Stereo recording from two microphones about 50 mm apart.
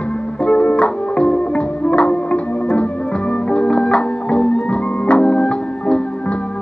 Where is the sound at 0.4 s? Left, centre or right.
Left.